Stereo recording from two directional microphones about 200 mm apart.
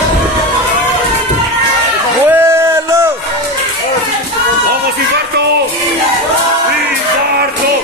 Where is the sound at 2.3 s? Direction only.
10° right (ahead or behind).